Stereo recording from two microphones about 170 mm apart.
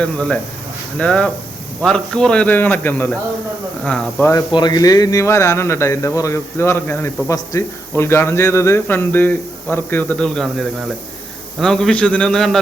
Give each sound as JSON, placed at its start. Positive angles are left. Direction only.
{"t": 0.0, "sound": "a man's voice", "side_deg": 5}
{"t": 4.3, "sound": "a man's voice", "side_deg": 25}